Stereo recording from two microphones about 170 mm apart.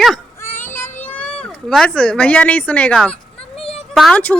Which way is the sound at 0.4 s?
15° left (ahead or behind).